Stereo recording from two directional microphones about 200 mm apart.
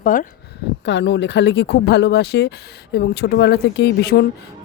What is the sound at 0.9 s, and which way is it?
Speech, 60° left (ahead or behind).